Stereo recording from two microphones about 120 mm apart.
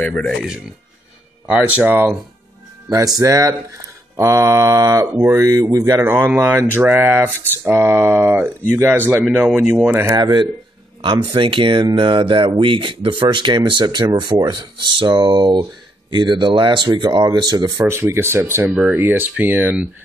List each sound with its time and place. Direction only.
0.1 s speech: 5° left (ahead or behind)
1.5 s speech: 10° right (ahead or behind)
2.9 s speech: 30° right (ahead or behind)
6.0 s speech: 15° right (ahead or behind)
9.2 s speech: 5° right (ahead or behind)
10.1 s speech: 35° right (ahead or behind)
17.8 s speech: 25° right (ahead or behind)